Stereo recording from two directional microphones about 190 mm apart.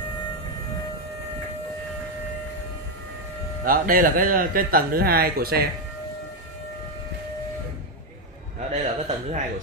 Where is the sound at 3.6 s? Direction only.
45° right (ahead or behind).